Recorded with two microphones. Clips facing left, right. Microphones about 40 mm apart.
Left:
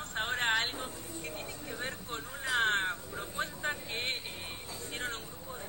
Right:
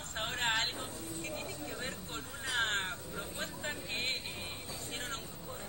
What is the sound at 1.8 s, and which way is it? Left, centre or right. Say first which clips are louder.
Vehicle: left 3 dB; centre.